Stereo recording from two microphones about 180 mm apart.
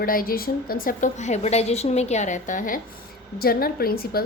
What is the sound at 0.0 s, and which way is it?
A woman's voice, 55° left (ahead or behind).